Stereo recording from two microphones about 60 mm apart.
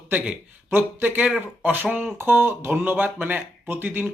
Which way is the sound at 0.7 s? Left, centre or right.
Right.